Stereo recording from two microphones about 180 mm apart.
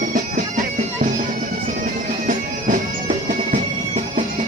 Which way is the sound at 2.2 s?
50° right (ahead or behind).